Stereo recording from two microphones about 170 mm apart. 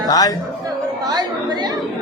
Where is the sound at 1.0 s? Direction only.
20° right (ahead or behind).